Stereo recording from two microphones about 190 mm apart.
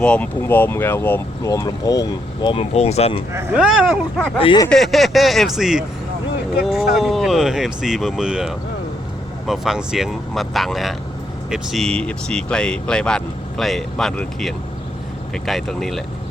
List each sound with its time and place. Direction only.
0.0 s speech: 5° left (ahead or behind); by 3.2 s 30° left (ahead or behind)
3.3 s speech: 5° right (ahead or behind)
4.4 s speech: 25° left (ahead or behind)
4.7 s speech: centre (ahead or behind)